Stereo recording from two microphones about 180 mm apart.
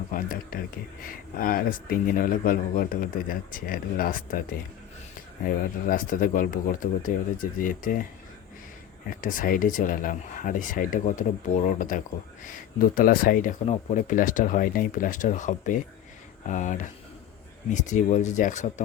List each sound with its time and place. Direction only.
0.1 s speech: 50° left (ahead or behind)
5.5 s speech: 50° left (ahead or behind)
9.0 s speech: 50° left (ahead or behind)